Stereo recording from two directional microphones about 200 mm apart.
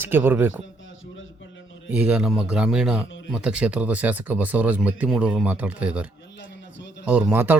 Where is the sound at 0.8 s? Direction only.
70° left (ahead or behind).